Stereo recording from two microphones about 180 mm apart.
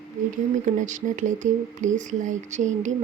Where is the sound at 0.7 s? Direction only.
45° right (ahead or behind).